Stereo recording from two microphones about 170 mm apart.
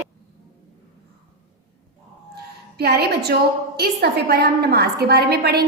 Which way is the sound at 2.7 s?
70° right (ahead or behind).